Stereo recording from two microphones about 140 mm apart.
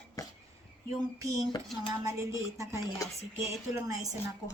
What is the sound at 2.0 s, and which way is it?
Speech, 20° right (ahead or behind).